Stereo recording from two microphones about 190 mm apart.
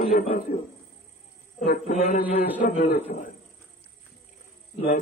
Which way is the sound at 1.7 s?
40° left (ahead or behind).